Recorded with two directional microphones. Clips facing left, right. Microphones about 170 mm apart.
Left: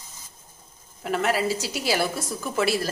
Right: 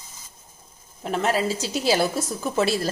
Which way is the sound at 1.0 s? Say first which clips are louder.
Right 1 dB; 25° right (ahead or behind).